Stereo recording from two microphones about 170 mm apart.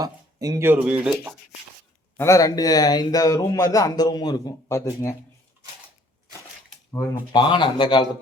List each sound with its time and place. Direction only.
0.0 s speech: 20° right (ahead or behind)
2.1 s speech: 15° left (ahead or behind)
6.9 s speech: 25° left (ahead or behind)